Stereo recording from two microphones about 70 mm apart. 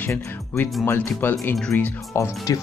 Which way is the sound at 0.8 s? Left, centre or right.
Left.